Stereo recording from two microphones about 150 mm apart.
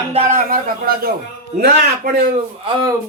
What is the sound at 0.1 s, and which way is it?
Speech, 45° right (ahead or behind).